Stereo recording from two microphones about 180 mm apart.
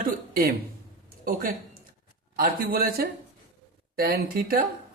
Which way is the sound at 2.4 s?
55° right (ahead or behind).